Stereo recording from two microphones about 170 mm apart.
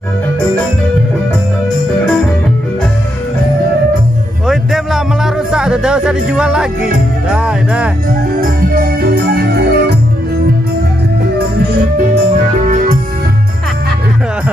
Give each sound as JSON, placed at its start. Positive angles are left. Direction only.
{"t": 4.5, "sound": "music", "side_deg": 0}
{"t": 7.2, "sound": "speech", "side_deg": -5}
{"t": 8.4, "sound": "organ", "side_deg": -60}
{"t": 12.6, "sound": "music", "side_deg": -55}